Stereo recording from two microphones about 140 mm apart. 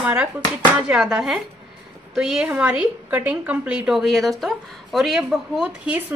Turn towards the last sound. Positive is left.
turn(degrees=-5)  # may be behind; listen again after turning